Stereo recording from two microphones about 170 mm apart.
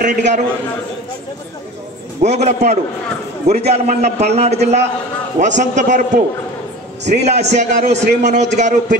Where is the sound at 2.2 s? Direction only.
40° right (ahead or behind).